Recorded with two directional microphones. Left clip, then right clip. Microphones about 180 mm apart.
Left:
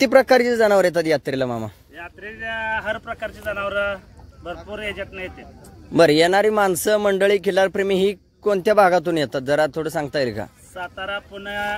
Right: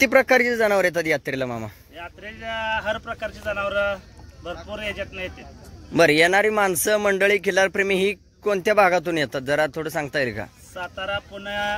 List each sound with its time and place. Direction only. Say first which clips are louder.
0.0 s speech: left 2 dB; 30° left (ahead or behind)
2.0 s speech: left 3 dB; 5° right (ahead or behind)
5.9 s speech: left 2 dB; 30° left (ahead or behind)
10.7 s speech: right 1 dB; centre (ahead or behind)